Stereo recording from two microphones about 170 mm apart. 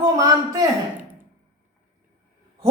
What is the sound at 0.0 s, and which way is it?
Speech, 20° right (ahead or behind).